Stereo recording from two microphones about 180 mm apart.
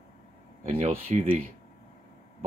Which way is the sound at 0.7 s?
35° right (ahead or behind).